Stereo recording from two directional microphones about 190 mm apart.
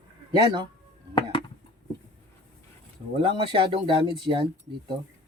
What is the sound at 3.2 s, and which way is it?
Speech, 25° right (ahead or behind).